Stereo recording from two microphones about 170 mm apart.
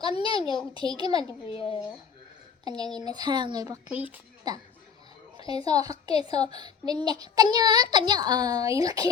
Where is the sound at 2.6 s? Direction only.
25° right (ahead or behind).